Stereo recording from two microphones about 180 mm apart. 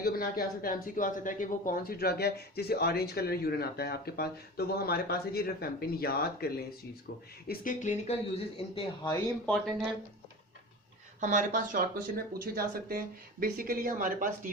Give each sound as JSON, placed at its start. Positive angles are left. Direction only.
{"t": 0.0, "sound": "speech", "side_deg": 55}
{"t": 11.2, "sound": "speech", "side_deg": -45}